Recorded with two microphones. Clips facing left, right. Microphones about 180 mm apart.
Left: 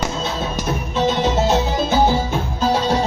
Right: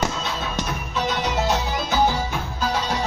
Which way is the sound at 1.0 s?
25° left (ahead or behind).